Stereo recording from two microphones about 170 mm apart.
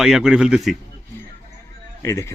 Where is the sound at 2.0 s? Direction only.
15° left (ahead or behind).